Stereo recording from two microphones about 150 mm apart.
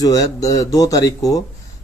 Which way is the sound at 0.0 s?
25° left (ahead or behind).